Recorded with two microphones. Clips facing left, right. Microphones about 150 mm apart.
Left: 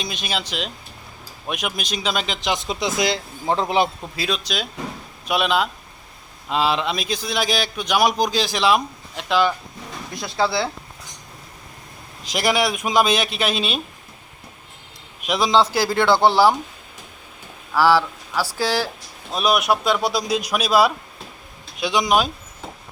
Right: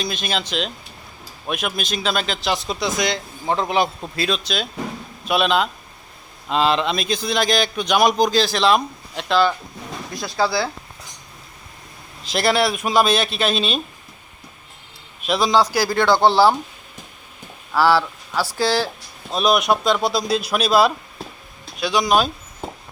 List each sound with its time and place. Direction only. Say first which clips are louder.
0.0 s a man's voice: right 3 dB; 15° left (ahead or behind); by 3.8 s 30° left (ahead or behind)
4.1 s a man's voice: right 2 dB; 10° left (ahead or behind)
10.2 s speech: right 1 dB; 20° left (ahead or behind)
12.2 s a man's voice: right 2 dB; 15° left (ahead or behind)
15.2 s a man's voice: even; 20° left (ahead or behind)
16.0 s speech: right 1 dB; 15° right (ahead or behind)
16.3 s a man's voice: right 1 dB; 15° left (ahead or behind)
17.8 s a man's voice: left 1 dB; 10° left (ahead or behind)